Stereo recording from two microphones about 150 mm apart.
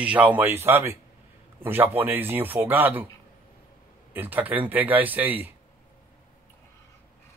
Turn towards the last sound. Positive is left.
turn(degrees=-10)  # may be behind; listen again after turning